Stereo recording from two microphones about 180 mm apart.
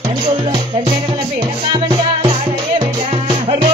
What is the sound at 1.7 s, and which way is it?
Music, 25° right (ahead or behind).